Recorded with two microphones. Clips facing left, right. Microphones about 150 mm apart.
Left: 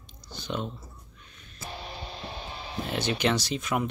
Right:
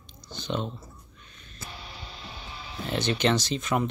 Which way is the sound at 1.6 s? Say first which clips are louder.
Left 4 dB; 40° left (ahead or behind).